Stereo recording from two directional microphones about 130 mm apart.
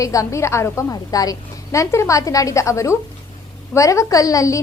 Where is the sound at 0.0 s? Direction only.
25° left (ahead or behind).